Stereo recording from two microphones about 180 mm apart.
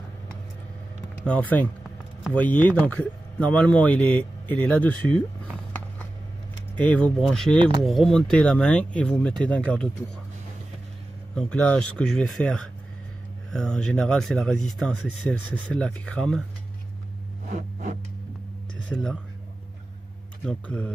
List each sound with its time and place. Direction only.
1.2 s speech: 10° left (ahead or behind)
6.8 s speech: 5° left (ahead or behind)
11.3 s speech: 5° left (ahead or behind)
17.5 s a sound: 45° right (ahead or behind)
18.9 s speech: 5° left (ahead or behind)
20.4 s speech: 10° left (ahead or behind)